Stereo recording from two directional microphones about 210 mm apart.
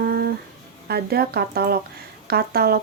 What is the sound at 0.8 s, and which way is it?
Speech, 50° right (ahead or behind).